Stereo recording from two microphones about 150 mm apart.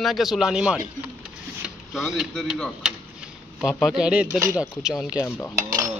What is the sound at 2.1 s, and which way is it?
Speech, 5° right (ahead or behind).